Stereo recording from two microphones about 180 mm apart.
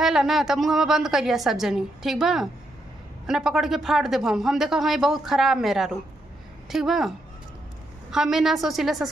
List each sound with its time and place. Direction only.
0.0 s speech: centre (ahead or behind)